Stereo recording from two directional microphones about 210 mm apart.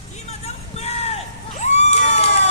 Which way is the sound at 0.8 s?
30° left (ahead or behind).